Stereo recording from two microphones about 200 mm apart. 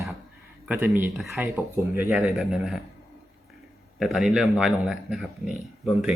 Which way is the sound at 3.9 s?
Centre (ahead or behind).